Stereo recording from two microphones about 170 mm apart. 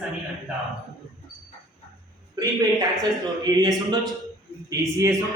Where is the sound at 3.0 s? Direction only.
25° right (ahead or behind).